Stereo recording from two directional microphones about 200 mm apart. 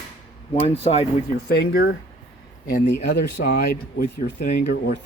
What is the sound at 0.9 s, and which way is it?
Speech, 30° left (ahead or behind).